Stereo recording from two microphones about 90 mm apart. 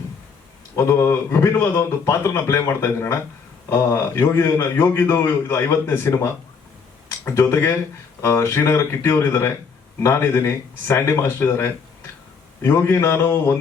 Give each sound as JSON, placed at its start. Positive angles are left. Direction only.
{"t": 0.8, "sound": "a man's voice", "side_deg": 35}